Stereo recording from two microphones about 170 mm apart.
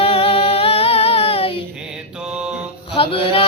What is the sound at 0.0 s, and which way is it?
Music, 35° left (ahead or behind).